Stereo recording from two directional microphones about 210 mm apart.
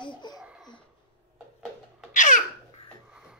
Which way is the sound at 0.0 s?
20° left (ahead or behind).